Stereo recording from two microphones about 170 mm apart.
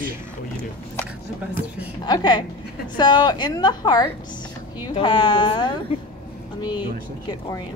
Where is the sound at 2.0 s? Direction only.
25° left (ahead or behind).